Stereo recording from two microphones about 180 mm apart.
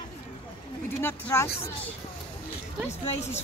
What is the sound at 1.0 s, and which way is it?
Speech, 10° left (ahead or behind).